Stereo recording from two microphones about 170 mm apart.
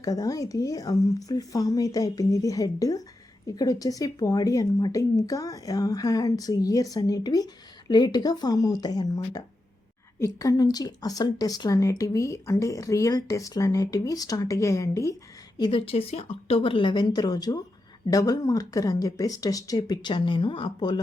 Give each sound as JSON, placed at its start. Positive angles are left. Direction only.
{"t": 0.0, "sound": "speech", "side_deg": 20}